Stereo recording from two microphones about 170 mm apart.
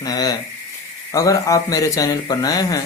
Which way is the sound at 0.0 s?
20° left (ahead or behind).